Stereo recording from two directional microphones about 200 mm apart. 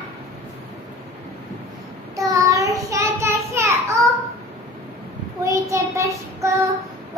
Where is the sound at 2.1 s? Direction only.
15° right (ahead or behind).